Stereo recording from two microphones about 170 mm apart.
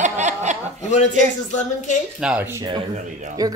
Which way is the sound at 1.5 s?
45° left (ahead or behind).